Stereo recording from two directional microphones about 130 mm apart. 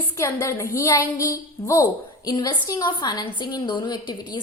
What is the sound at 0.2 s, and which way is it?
A woman's voice, 20° left (ahead or behind).